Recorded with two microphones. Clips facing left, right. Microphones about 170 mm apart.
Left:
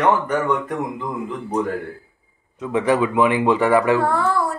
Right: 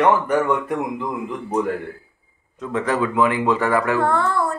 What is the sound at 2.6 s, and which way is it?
Speech, 15° left (ahead or behind).